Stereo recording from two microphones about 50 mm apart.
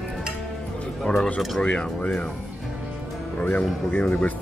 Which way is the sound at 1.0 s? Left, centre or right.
Centre.